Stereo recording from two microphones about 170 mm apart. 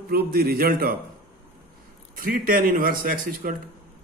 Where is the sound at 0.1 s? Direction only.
65° right (ahead or behind).